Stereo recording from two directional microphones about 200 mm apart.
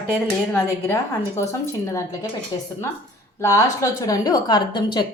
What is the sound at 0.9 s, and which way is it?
A woman's voice, 15° left (ahead or behind).